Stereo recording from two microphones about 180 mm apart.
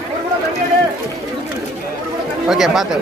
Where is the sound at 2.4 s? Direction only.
Centre (ahead or behind).